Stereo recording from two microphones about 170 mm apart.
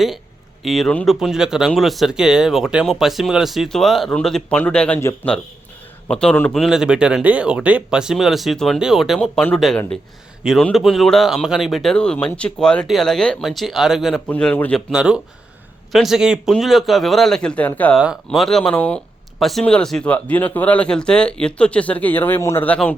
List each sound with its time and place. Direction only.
0.6 s speech: centre (ahead or behind); by 5.3 s 15° left (ahead or behind)
6.1 s speech: 5° left (ahead or behind)
14.8 s speech: 5° right (ahead or behind)
18.0 s speech: centre (ahead or behind)